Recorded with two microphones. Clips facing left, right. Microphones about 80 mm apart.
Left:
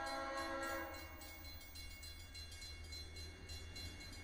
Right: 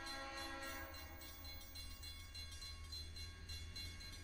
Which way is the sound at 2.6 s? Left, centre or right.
Right.